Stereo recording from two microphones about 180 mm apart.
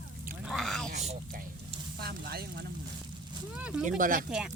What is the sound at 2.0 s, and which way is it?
Speech, 60° right (ahead or behind).